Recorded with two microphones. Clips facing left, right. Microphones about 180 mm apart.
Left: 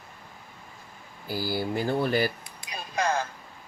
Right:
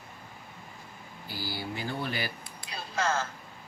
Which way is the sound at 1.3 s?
45° left (ahead or behind).